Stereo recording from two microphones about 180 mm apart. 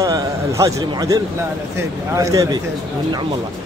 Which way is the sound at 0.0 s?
20° right (ahead or behind).